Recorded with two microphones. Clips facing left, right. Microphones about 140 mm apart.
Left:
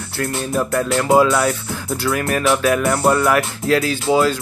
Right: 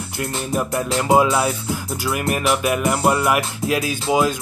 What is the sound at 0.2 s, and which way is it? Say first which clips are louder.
Speech: left 3 dB; 15° right (ahead or behind).